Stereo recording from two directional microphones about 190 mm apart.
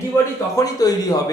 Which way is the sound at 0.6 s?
20° left (ahead or behind).